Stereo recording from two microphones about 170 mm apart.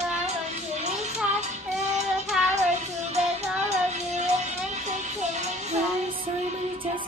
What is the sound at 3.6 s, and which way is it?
Music, 40° right (ahead or behind).